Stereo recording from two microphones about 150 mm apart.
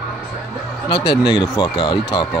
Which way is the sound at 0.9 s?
30° left (ahead or behind).